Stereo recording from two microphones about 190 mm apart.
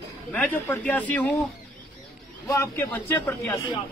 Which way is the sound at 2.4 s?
15° left (ahead or behind).